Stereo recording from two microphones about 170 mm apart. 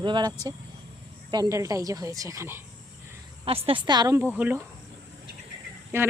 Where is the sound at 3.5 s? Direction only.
35° right (ahead or behind).